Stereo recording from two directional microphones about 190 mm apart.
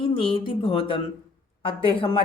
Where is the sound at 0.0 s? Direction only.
30° left (ahead or behind).